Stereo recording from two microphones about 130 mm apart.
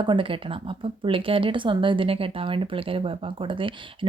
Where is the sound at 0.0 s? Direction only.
40° right (ahead or behind).